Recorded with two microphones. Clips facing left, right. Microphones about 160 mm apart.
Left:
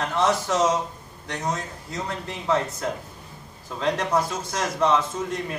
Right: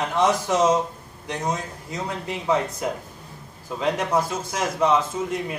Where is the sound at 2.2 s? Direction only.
15° right (ahead or behind).